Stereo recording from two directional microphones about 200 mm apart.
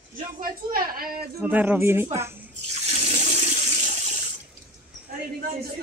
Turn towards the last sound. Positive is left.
turn(degrees=-35)  # may be behind; listen again after turning